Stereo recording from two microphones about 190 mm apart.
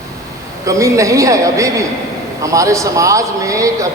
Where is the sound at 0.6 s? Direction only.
15° right (ahead or behind).